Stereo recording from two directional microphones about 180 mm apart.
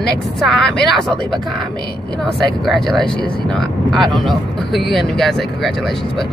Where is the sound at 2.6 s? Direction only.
Centre (ahead or behind).